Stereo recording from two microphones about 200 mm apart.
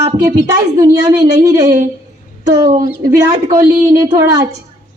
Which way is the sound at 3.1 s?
15° right (ahead or behind).